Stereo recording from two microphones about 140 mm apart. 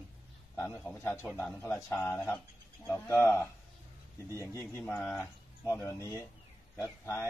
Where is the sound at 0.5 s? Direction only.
10° left (ahead or behind).